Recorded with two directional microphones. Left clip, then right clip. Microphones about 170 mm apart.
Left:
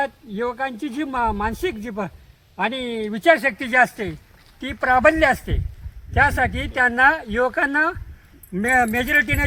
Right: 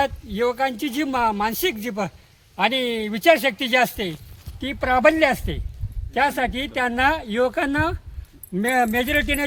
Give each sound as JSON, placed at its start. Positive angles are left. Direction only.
{"t": 0.0, "sound": "speech", "side_deg": -15}